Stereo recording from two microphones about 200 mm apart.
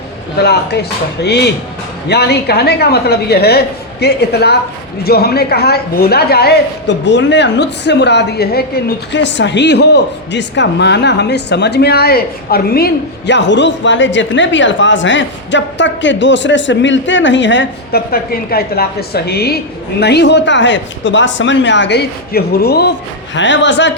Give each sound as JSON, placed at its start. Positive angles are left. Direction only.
{"t": 0.3, "sound": "a woman's voice", "side_deg": 55}